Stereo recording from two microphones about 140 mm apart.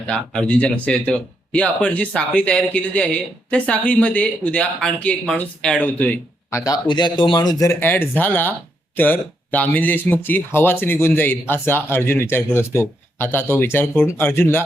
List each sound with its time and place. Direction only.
0.1 s speech: 10° left (ahead or behind)
6.8 s speech: 35° left (ahead or behind); by 14.6 s 15° left (ahead or behind)